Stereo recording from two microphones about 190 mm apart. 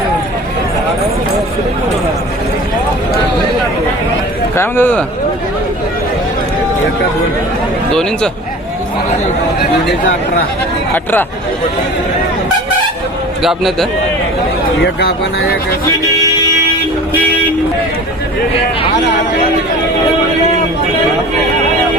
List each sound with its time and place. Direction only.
4.5 s a man's voice: 10° left (ahead or behind)
10.9 s a man's voice: 10° left (ahead or behind)
13.4 s a man's voice: centre (ahead or behind)
14.8 s speech: 55° left (ahead or behind)